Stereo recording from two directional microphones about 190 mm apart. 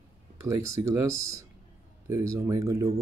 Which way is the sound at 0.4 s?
15° right (ahead or behind).